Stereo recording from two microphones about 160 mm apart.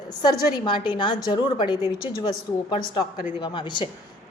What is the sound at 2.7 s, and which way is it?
A woman's voice, 30° left (ahead or behind).